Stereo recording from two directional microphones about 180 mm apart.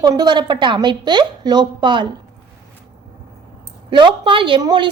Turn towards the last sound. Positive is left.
turn(degrees=-25)  # may be behind; listen again after turning